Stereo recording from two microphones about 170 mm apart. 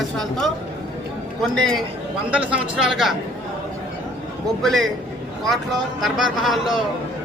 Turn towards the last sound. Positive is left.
turn(degrees=0)  # may be behind; listen again after turning